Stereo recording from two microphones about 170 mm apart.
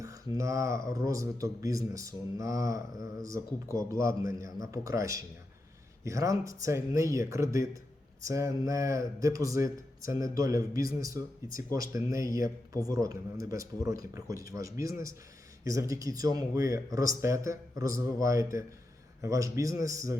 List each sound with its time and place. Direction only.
0.3 s speech: 20° right (ahead or behind)